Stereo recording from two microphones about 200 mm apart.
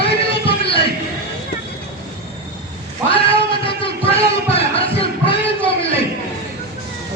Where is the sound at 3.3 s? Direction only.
25° left (ahead or behind).